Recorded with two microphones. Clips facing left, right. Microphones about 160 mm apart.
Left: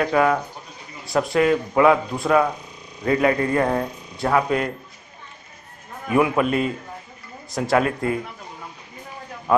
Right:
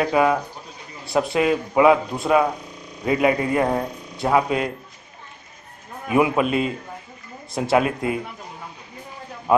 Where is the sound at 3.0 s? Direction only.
15° right (ahead or behind).